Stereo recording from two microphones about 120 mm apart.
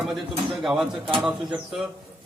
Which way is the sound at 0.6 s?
5° right (ahead or behind).